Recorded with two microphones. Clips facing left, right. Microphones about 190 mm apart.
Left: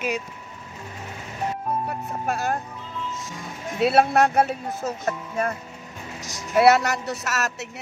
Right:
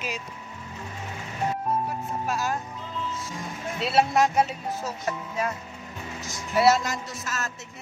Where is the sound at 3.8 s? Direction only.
55° left (ahead or behind).